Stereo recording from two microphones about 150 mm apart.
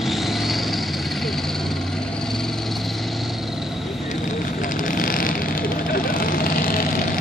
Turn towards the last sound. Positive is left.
turn(degrees=75)  # may be behind; listen again after turning